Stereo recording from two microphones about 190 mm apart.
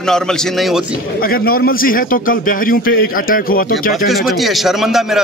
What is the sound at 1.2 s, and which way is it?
A man's voice, 50° left (ahead or behind).